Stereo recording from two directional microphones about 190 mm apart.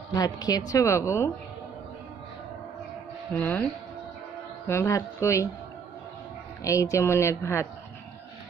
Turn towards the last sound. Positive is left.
turn(degrees=15)  # may be behind; listen again after turning